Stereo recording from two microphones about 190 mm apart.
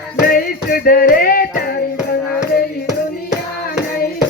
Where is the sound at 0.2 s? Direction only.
50° left (ahead or behind).